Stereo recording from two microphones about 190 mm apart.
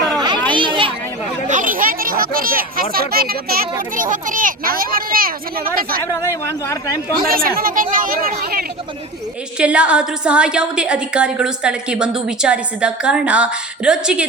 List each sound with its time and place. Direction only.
0.5 s children playing: 25° right (ahead or behind)
1.5 s a sound: 45° right (ahead or behind)
2.9 s a child's voice: 50° right (ahead or behind)
6.0 s speech: 15° left (ahead or behind)
7.2 s a child's voice: 50° right (ahead or behind)
9.6 s a woman's voice: 5° right (ahead or behind)